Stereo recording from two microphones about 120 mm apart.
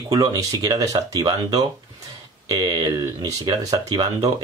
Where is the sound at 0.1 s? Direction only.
30° right (ahead or behind).